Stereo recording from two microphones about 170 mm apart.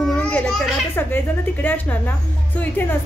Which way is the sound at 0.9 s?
10° left (ahead or behind).